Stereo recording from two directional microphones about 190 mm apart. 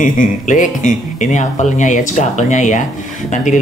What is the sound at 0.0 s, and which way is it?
Speech, 40° left (ahead or behind).